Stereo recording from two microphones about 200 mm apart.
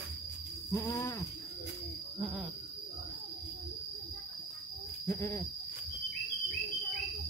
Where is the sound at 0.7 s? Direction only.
15° left (ahead or behind).